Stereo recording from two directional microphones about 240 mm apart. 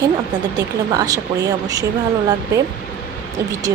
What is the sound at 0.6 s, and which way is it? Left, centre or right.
Speech, centre.